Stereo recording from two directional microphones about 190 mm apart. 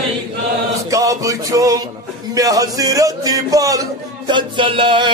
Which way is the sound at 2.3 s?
20° right (ahead or behind).